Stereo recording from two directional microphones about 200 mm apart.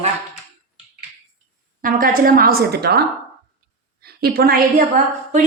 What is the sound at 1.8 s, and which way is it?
A woman's voice, 45° right (ahead or behind).